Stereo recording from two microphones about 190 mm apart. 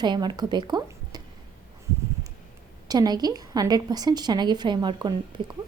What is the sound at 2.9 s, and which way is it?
A woman's voice, 20° right (ahead or behind).